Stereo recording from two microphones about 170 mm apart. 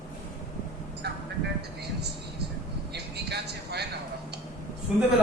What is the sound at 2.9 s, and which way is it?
Vehicle, 75° right (ahead or behind).